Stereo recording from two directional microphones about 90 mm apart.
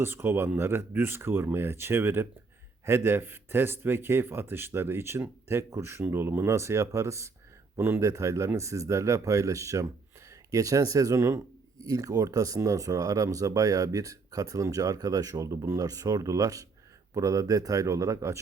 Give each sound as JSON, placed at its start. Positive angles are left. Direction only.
{"t": 0.0, "sound": "a man's voice", "side_deg": -25}